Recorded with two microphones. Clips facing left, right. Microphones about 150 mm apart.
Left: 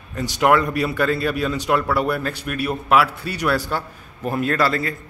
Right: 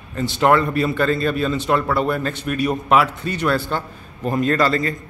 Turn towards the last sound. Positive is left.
turn(degrees=5)  # may be behind; listen again after turning